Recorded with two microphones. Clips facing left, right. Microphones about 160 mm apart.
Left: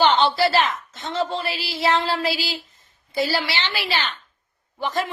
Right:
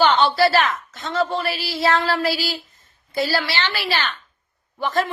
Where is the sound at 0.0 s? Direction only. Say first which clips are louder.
Right 1 dB; 20° left (ahead or behind).